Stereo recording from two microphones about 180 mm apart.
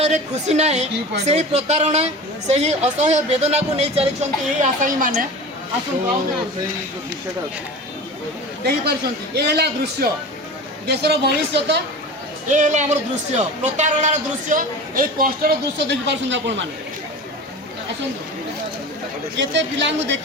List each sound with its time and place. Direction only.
0.0 s speech: 40° right (ahead or behind)
8.6 s a man's voice: 65° right (ahead or behind)
12.5 s speech: 45° right (ahead or behind); by 16.6 s 85° right
19.4 s speech: 90° right